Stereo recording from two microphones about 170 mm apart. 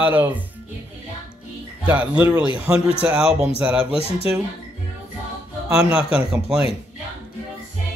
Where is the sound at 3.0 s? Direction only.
5° right (ahead or behind).